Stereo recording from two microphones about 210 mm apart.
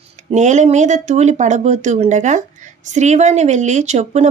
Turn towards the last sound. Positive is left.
turn(degrees=-30)  # may be behind; listen again after turning